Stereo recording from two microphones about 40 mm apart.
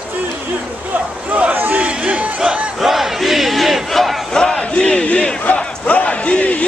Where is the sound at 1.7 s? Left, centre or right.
Right.